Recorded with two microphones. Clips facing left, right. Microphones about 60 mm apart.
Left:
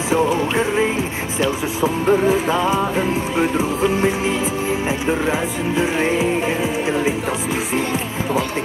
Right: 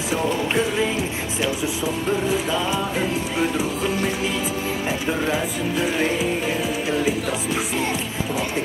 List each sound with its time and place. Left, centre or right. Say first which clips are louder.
0.1 s music: left 5 dB; left